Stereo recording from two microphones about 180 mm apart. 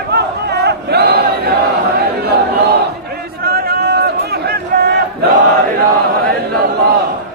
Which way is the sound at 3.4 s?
60° right (ahead or behind).